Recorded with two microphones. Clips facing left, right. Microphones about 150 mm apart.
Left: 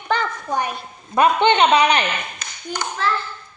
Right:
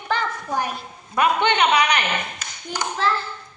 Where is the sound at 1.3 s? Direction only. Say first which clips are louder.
Left 4 dB; 25° left (ahead or behind).